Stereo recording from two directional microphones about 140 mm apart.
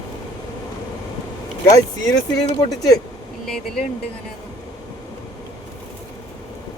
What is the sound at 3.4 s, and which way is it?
Speech, 5° left (ahead or behind).